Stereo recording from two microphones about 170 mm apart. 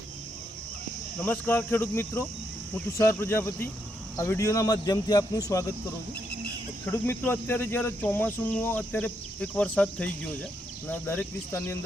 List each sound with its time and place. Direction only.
1.2 s cricket: 10° left (ahead or behind)
4.2 s speech: 15° left (ahead or behind)
6.8 s cricket: 10° left (ahead or behind)